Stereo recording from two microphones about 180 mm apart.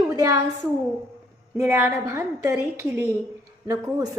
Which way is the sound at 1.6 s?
15° right (ahead or behind).